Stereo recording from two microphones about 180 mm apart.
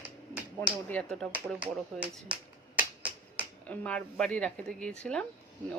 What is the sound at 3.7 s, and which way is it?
Speech, 5° left (ahead or behind).